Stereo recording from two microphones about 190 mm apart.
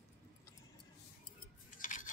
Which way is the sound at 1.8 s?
45° left (ahead or behind).